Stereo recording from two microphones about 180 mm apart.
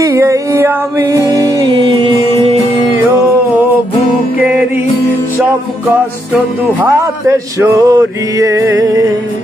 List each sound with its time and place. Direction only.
0.0 s music: 20° right (ahead or behind)
6.8 s male singing: 15° right (ahead or behind)